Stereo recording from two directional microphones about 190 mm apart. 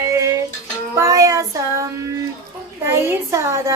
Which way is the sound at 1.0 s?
15° right (ahead or behind).